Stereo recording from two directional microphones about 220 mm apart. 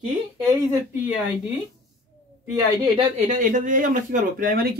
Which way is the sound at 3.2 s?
35° right (ahead or behind).